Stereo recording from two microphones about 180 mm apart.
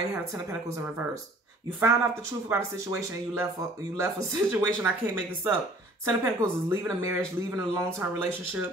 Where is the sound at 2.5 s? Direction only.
15° right (ahead or behind).